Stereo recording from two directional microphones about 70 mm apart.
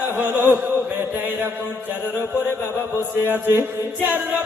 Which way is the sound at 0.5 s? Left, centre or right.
Right.